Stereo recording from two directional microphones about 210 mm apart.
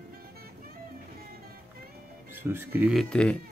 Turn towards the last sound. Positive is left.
turn(degrees=5)  # may be behind; listen again after turning